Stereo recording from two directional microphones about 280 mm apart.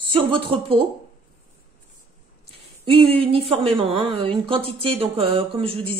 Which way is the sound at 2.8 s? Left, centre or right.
Centre.